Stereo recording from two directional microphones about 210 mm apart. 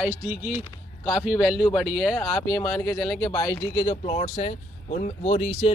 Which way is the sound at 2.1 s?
10° left (ahead or behind).